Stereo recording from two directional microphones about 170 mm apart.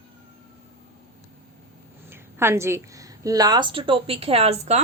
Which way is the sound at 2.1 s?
15° right (ahead or behind).